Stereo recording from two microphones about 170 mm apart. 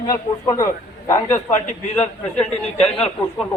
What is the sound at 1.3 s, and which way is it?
Speech, 45° left (ahead or behind).